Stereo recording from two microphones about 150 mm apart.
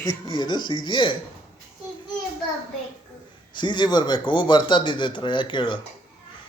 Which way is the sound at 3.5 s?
30° left (ahead or behind).